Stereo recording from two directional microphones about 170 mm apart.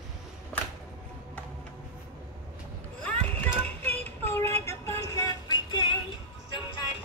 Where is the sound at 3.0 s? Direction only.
10° left (ahead or behind); by 6.0 s 30° left (ahead or behind).